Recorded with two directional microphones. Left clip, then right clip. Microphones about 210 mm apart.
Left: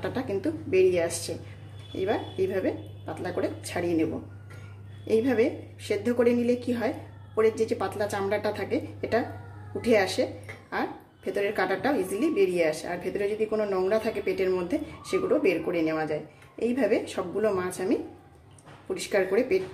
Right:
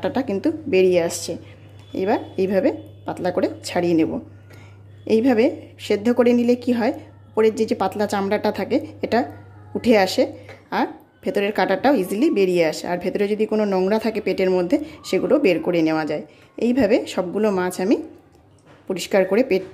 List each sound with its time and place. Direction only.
0.0 s a woman's voice: 40° right (ahead or behind)
18.9 s a woman's voice: 45° right (ahead or behind)